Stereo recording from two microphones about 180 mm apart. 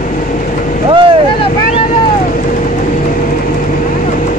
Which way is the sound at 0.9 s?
30° right (ahead or behind).